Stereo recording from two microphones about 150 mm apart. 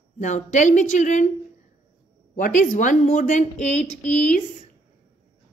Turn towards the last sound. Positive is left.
turn(degrees=50)  # may be behind; listen again after turning